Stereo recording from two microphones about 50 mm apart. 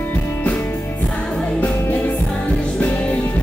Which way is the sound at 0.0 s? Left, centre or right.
Left.